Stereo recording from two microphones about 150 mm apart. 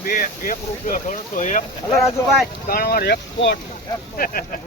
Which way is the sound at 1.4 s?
55° left (ahead or behind).